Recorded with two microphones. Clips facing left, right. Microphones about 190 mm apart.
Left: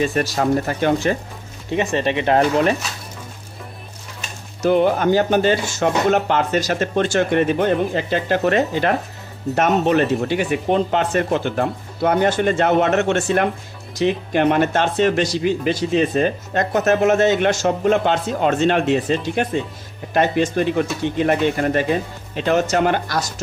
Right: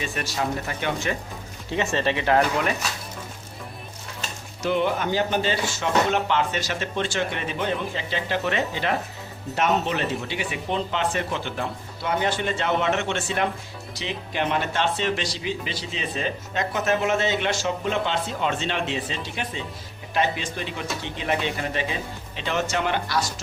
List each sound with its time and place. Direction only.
0.0 s speech: 40° left (ahead or behind)
1.7 s speech: 15° left (ahead or behind)
4.6 s speech: 45° left (ahead or behind)